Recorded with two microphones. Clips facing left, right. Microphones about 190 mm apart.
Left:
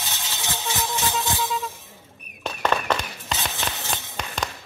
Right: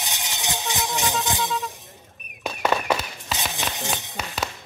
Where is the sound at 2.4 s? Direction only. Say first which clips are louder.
Right 1 dB; 10° right (ahead or behind).